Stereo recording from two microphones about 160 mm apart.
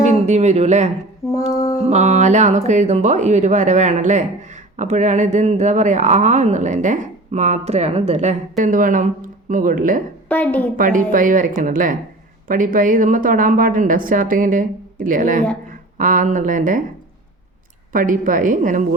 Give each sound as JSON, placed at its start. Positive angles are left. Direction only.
{"t": 0.0, "sound": "speech", "side_deg": -45}
{"t": 1.2, "sound": "female singing", "side_deg": 20}
{"t": 1.5, "sound": "music", "side_deg": 20}
{"t": 1.8, "sound": "a woman's voice", "side_deg": -45}
{"t": 10.2, "sound": "a woman's voice", "side_deg": 10}
{"t": 10.8, "sound": "a woman's voice", "side_deg": -55}
{"t": 17.9, "sound": "a woman's voice", "side_deg": -55}